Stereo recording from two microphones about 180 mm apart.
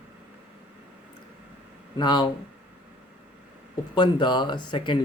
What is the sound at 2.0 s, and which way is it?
Speech, 25° left (ahead or behind).